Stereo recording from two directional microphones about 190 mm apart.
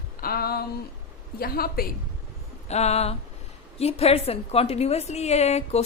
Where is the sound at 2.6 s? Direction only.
35° left (ahead or behind).